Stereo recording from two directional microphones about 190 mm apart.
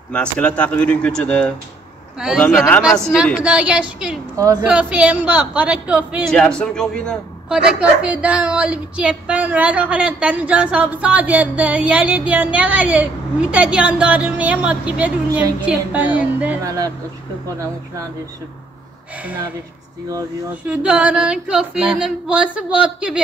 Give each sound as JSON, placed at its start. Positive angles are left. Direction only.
{"t": 0.1, "sound": "a man's voice", "side_deg": 5}
{"t": 2.4, "sound": "speech", "side_deg": 10}
{"t": 2.8, "sound": "female singing", "side_deg": 5}
{"t": 4.4, "sound": "a man's voice", "side_deg": -20}
{"t": 4.6, "sound": "a man's voice", "side_deg": -5}
{"t": 6.3, "sound": "a man's voice", "side_deg": 5}
{"t": 20.6, "sound": "female singing", "side_deg": -5}